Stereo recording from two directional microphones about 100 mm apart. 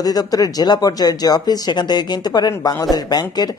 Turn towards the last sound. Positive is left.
turn(degrees=40)  # may be behind; listen again after turning